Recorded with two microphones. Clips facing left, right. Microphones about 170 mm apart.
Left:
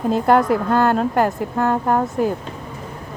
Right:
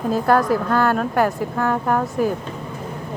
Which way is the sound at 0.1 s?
20° left (ahead or behind).